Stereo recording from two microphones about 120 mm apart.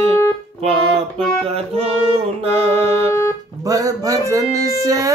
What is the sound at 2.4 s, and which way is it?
Music, 60° right (ahead or behind).